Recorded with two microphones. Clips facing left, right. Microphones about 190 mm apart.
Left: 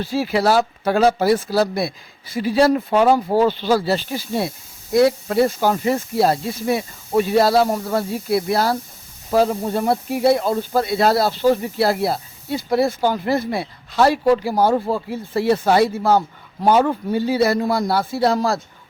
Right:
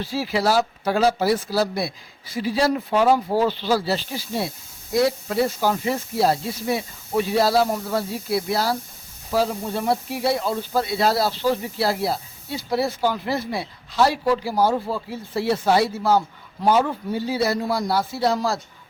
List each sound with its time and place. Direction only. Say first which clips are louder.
0.0 s speech: left 4 dB; 50° left (ahead or behind)